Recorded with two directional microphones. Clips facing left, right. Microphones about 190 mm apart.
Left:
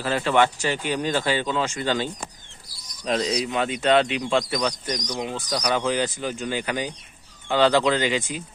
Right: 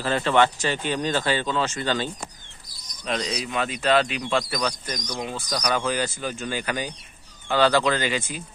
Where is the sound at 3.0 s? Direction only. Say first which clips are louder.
Left 4 dB; 35° left (ahead or behind); by 8.4 s 15° left (ahead or behind).